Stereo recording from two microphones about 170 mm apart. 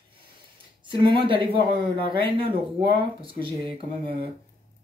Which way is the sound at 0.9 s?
30° right (ahead or behind).